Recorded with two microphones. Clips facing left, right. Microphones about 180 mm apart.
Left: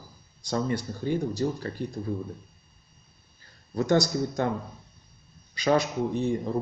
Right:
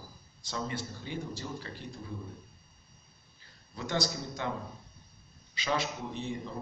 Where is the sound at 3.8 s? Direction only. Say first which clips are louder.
Left 10 dB; 45° left (ahead or behind).